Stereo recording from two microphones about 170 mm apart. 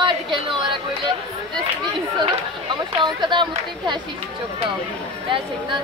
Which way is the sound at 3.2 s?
25° right (ahead or behind).